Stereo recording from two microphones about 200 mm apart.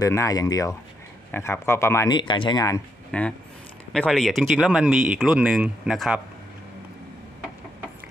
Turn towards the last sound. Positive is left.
turn(degrees=0)  # may be behind; listen again after turning